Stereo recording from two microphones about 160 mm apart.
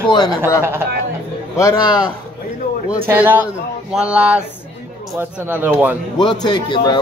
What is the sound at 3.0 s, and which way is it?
Speech, 10° right (ahead or behind).